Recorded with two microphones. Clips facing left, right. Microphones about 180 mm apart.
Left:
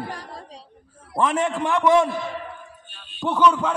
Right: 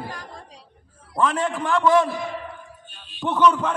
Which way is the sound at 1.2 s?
20° left (ahead or behind).